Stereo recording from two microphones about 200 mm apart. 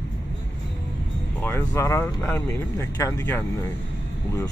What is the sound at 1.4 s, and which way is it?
Speech, 10° left (ahead or behind).